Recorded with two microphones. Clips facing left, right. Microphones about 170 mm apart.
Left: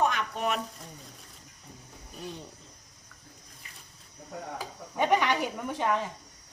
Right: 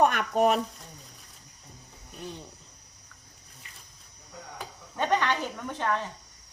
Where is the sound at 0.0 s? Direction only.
55° right (ahead or behind).